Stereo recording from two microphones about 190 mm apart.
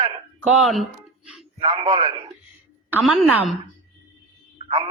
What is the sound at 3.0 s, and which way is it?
Speech, centre (ahead or behind).